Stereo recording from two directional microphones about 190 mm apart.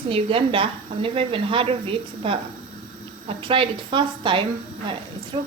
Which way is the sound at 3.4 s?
25° right (ahead or behind).